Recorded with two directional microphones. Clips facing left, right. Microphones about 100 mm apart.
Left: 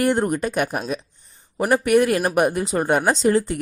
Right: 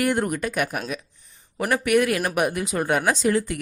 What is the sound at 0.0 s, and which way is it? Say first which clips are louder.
Speech: left 3 dB; 30° left (ahead or behind).